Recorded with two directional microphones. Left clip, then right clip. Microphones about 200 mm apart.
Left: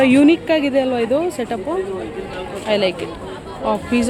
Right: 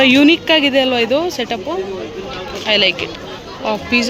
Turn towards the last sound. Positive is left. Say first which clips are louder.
# right 3 dB
turn(degrees=20)  # may be behind; listen again after turning